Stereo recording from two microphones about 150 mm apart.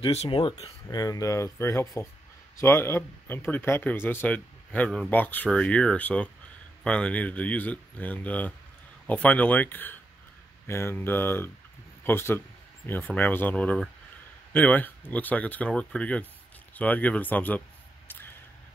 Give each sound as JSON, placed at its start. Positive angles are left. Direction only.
{"t": 0.0, "sound": "speech", "side_deg": 40}
{"t": 0.8, "sound": "speech", "side_deg": 25}